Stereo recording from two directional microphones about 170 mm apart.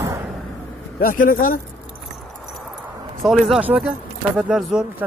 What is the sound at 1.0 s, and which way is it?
Speech, 55° left (ahead or behind).